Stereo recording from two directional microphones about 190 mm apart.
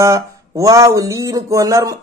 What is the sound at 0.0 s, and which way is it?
A man's voice, 15° right (ahead or behind).